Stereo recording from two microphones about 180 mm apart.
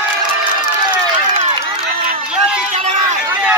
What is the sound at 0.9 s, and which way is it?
Run, 30° right (ahead or behind).